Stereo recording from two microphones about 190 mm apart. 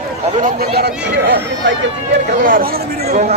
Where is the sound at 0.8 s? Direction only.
65° right (ahead or behind).